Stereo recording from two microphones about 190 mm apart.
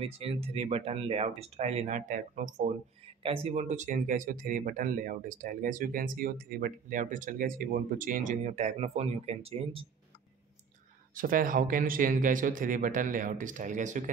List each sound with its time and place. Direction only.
0.0 s speech: 30° right (ahead or behind)
3.2 s speech: 30° right (ahead or behind)
11.1 s speech: 45° right (ahead or behind)